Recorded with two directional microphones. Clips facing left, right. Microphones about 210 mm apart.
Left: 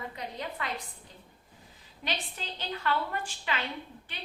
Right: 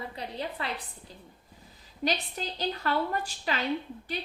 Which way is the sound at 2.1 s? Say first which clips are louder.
Right 5 dB; 40° right (ahead or behind).